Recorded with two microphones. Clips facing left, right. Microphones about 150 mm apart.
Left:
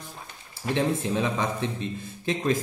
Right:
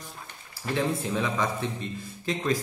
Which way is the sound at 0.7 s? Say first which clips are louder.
Left 2 dB; 20° left (ahead or behind).